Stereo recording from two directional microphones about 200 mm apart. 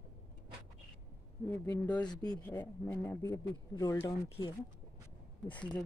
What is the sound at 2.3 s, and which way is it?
Speech, 10° left (ahead or behind).